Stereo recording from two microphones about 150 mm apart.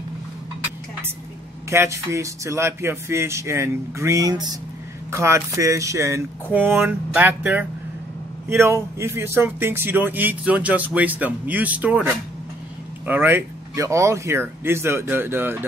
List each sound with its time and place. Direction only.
1.7 s speech: 20° right (ahead or behind)